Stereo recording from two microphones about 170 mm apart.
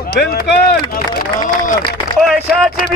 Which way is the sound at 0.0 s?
65° left (ahead or behind).